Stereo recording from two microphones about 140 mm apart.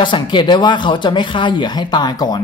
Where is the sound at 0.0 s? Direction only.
35° left (ahead or behind).